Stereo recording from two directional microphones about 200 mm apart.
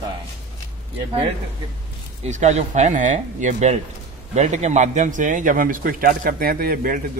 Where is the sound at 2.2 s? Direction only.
35° right (ahead or behind).